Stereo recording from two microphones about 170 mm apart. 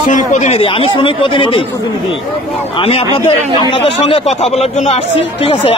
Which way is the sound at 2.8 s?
35° left (ahead or behind).